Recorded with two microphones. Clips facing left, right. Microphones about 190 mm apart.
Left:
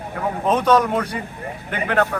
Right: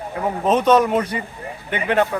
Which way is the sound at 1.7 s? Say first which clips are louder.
Right 2 dB; 25° right (ahead or behind).